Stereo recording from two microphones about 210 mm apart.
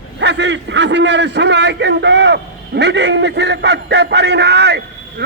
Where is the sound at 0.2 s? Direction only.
55° right (ahead or behind).